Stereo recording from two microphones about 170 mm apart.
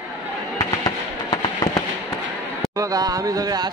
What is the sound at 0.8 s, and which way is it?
Fireworks, 20° left (ahead or behind).